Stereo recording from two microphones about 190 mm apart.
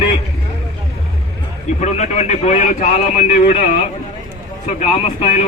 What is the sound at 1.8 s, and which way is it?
A man's voice, 35° left (ahead or behind).